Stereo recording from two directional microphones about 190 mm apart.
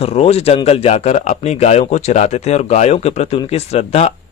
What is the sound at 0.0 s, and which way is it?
Speech, 35° left (ahead or behind).